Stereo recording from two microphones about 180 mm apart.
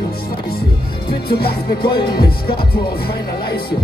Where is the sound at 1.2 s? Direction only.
60° left (ahead or behind).